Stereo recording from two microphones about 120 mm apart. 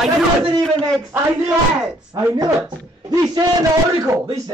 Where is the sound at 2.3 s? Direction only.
30° right (ahead or behind).